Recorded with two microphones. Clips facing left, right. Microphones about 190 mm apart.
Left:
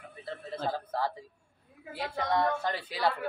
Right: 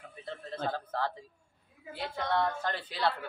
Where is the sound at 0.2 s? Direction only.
5° left (ahead or behind).